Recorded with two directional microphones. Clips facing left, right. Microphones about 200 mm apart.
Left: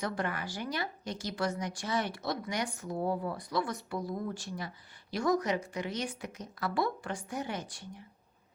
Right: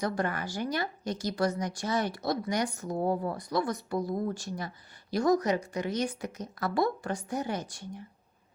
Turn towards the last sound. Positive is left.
turn(degrees=-40)  # may be behind; listen again after turning